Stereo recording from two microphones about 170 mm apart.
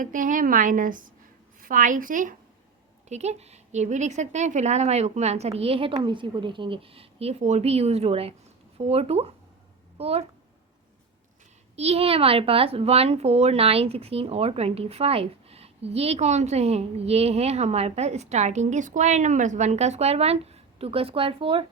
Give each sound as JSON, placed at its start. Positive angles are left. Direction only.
{"t": 0.0, "sound": "a woman's voice", "side_deg": -50}
{"t": 3.1, "sound": "speech", "side_deg": -40}
{"t": 11.8, "sound": "speech", "side_deg": -35}